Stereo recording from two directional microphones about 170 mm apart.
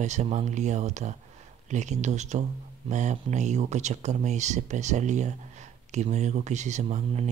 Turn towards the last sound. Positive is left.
turn(degrees=-40)  # may be behind; listen again after turning